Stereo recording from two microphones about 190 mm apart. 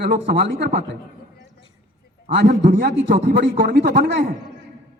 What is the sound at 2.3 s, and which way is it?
A man's voice, 55° right (ahead or behind).